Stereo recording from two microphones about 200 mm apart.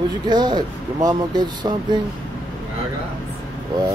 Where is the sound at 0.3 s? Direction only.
20° right (ahead or behind).